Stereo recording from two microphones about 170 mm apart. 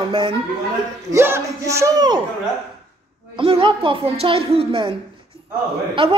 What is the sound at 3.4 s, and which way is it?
Speech, 30° right (ahead or behind).